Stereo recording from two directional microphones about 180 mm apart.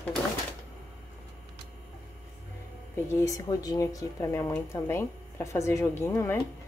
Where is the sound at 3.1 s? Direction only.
15° left (ahead or behind).